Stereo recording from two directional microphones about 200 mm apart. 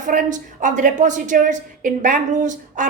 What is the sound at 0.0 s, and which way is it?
A woman's voice, 40° right (ahead or behind).